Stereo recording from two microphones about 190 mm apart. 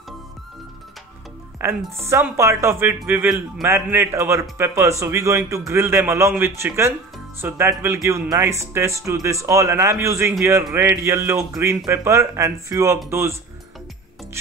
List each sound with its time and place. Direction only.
1.6 s speech: 10° right (ahead or behind)